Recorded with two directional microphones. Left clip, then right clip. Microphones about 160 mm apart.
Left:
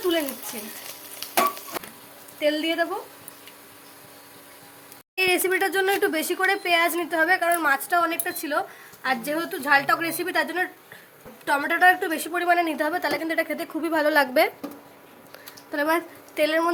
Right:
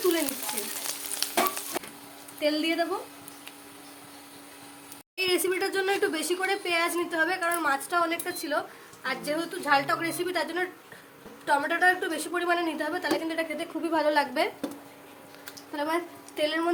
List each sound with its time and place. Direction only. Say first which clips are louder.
1.2 s frying: right 5 dB; 10° right (ahead or behind)
2.4 s a woman's voice: left 3 dB; 30° left (ahead or behind)
5.1 s speech: left 5 dB; 45° left (ahead or behind)
15.7 s a woman's voice: left 6 dB; 55° left (ahead or behind)